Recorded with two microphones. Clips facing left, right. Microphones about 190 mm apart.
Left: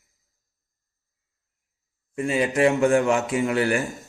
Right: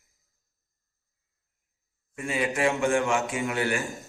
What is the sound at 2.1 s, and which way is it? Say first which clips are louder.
Speech: left 6 dB; 35° left (ahead or behind).